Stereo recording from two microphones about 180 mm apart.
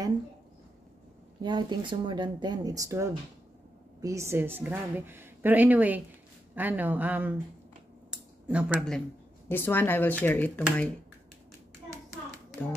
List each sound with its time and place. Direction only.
1.4 s a woman's voice: 25° right (ahead or behind); by 7.3 s 10° right (ahead or behind)
8.1 s a sound: 5° right (ahead or behind)
9.5 s speech: 10° left (ahead or behind)